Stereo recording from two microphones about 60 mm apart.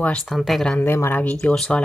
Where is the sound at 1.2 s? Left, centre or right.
Left.